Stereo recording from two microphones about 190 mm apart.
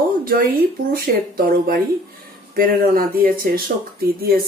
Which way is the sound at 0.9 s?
50° right (ahead or behind).